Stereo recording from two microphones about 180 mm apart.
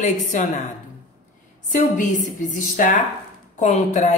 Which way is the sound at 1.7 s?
45° left (ahead or behind).